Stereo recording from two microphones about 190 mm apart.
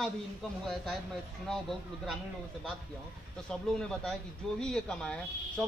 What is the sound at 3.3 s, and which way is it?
Speech, 5° left (ahead or behind).